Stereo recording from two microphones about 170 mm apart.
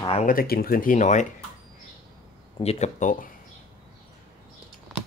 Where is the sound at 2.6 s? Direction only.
45° left (ahead or behind).